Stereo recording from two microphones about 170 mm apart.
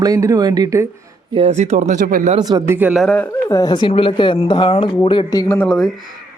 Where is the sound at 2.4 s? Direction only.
20° right (ahead or behind).